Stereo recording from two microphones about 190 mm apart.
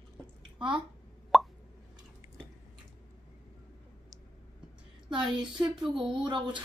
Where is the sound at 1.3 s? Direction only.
Centre (ahead or behind).